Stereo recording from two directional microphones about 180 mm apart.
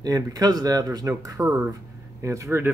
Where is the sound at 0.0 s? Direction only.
20° right (ahead or behind).